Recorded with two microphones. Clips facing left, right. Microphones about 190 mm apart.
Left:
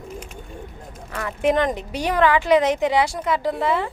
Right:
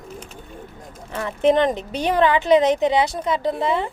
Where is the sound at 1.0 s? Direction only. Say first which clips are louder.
Right 3 dB; 25° right (ahead or behind).